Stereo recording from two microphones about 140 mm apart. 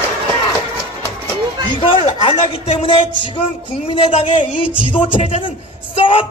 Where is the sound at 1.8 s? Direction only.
40° left (ahead or behind).